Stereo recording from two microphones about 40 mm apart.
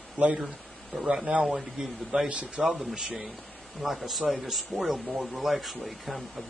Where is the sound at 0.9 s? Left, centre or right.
Centre.